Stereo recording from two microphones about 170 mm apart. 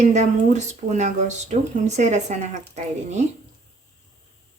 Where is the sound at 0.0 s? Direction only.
45° right (ahead or behind).